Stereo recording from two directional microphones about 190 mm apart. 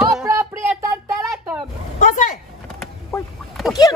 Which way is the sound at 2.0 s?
45° left (ahead or behind).